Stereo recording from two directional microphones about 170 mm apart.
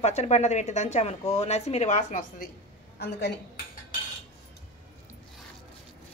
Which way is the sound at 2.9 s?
65° left (ahead or behind).